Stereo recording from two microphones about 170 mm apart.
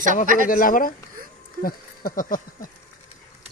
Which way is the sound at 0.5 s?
55° left (ahead or behind).